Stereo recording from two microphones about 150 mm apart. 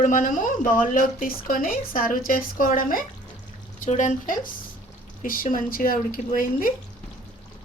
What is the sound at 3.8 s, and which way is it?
Speech, 55° left (ahead or behind).